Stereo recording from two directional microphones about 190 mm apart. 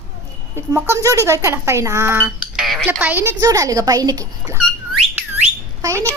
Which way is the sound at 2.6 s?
Centre (ahead or behind).